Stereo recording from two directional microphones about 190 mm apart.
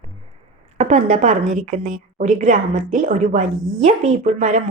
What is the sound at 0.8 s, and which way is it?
A woman's voice, 35° right (ahead or behind).